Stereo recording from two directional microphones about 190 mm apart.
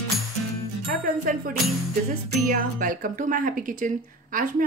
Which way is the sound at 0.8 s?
50° right (ahead or behind).